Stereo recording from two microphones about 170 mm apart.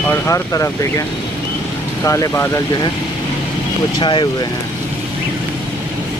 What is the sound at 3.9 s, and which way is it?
Speech, 25° left (ahead or behind).